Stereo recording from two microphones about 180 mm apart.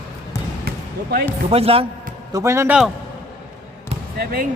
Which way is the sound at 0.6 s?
60° right (ahead or behind).